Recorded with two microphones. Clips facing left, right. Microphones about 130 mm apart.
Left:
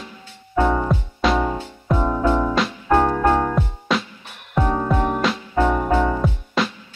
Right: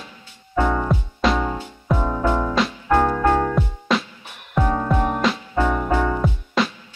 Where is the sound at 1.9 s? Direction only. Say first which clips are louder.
Left 2 dB; 15° left (ahead or behind).